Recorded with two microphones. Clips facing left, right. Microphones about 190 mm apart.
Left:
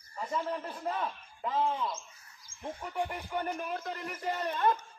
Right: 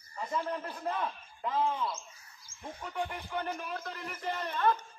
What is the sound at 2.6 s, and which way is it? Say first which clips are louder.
Music: left 2 dB; 10° left (ahead or behind).